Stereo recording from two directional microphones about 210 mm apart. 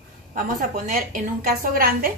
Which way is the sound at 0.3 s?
40° right (ahead or behind).